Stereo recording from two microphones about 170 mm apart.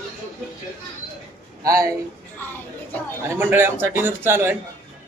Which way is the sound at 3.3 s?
15° right (ahead or behind).